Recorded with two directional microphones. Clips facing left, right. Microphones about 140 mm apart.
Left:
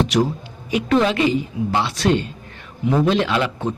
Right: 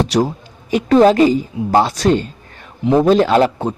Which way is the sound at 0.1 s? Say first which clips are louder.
Right 3 dB; 35° right (ahead or behind).